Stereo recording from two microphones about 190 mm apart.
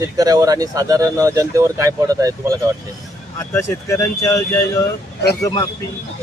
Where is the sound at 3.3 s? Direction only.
15° left (ahead or behind).